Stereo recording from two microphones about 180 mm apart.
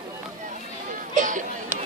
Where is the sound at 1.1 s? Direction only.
45° right (ahead or behind).